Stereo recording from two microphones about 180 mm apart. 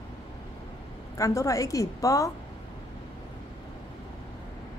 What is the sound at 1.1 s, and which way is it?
A woman's voice, 15° left (ahead or behind).